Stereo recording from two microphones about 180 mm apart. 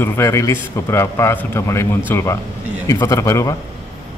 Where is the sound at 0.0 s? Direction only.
15° left (ahead or behind).